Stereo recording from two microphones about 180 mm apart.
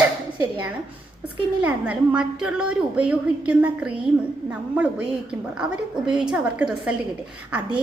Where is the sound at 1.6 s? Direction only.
5° right (ahead or behind).